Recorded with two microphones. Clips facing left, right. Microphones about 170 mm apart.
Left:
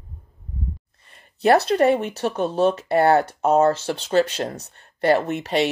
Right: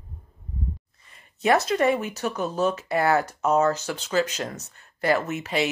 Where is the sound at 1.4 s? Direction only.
35° left (ahead or behind).